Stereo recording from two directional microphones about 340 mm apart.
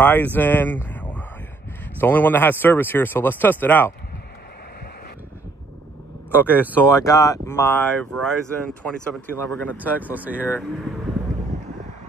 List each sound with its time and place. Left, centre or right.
0.0 s speech: centre
6.3 s speech: centre